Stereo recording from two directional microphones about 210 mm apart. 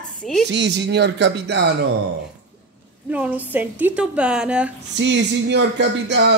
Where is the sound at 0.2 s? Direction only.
5° left (ahead or behind).